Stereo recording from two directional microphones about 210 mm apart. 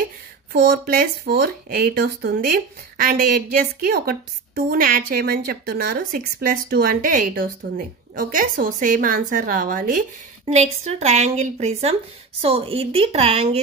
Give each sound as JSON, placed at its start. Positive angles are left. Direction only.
{"t": 0.5, "sound": "speech", "side_deg": -45}
{"t": 10.4, "sound": "speech", "side_deg": -30}